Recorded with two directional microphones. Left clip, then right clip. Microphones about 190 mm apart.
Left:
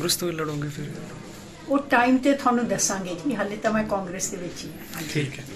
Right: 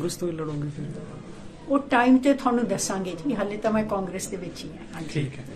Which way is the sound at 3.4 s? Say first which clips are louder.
Even; 40° right (ahead or behind).